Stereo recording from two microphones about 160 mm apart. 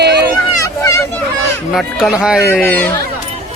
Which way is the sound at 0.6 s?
20° left (ahead or behind).